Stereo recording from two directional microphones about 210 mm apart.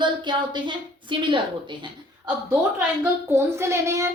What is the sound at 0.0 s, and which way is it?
A woman's voice, 20° right (ahead or behind).